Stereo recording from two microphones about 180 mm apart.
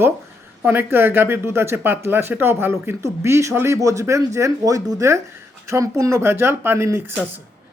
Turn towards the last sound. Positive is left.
turn(degrees=-10)  # may be behind; listen again after turning